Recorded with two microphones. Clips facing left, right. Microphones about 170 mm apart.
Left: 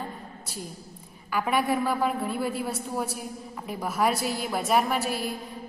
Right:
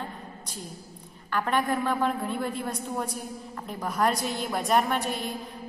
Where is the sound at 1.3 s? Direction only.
10° left (ahead or behind).